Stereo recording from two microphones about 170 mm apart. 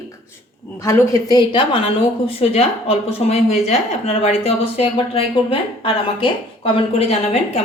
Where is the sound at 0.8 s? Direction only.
20° left (ahead or behind).